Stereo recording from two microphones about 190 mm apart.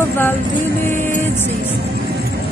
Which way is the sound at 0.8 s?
40° right (ahead or behind).